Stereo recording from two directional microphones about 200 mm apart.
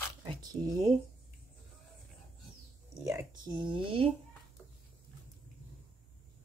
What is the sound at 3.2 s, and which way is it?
Speech, 20° right (ahead or behind).